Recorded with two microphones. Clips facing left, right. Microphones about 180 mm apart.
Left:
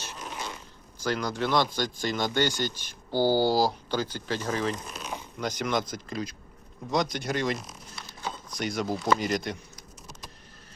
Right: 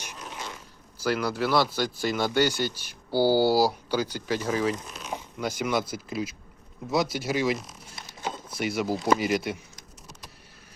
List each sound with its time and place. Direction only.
0.9 s speech: 10° right (ahead or behind)
7.9 s a sound: 20° right (ahead or behind)
8.4 s speech: 5° right (ahead or behind)